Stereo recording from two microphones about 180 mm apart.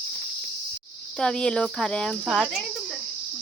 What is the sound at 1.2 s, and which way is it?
Speech, 5° left (ahead or behind).